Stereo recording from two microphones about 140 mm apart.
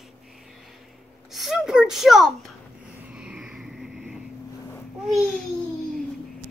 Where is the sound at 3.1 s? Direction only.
5° right (ahead or behind).